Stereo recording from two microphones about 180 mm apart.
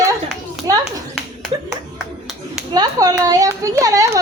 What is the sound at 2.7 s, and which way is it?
Speech, 20° right (ahead or behind).